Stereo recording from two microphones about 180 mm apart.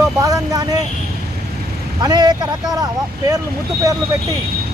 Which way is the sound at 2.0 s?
20° right (ahead or behind).